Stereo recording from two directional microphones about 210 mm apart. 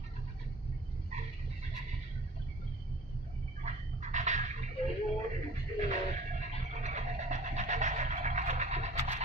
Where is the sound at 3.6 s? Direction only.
35° right (ahead or behind).